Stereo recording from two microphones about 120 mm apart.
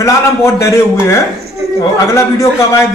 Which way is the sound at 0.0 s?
25° left (ahead or behind).